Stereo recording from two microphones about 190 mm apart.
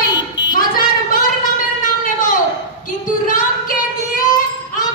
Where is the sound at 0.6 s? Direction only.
50° left (ahead or behind).